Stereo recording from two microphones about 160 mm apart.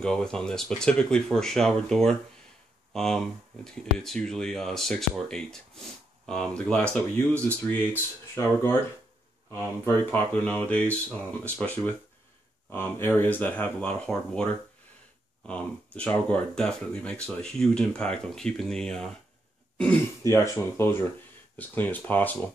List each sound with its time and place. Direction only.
0.0 s speech: 5° left (ahead or behind)
7.3 s speech: 15° right (ahead or behind)
8.4 s speech: 15° left (ahead or behind)
10.1 s speech: 10° left (ahead or behind)
20.2 s speech: 20° left (ahead or behind)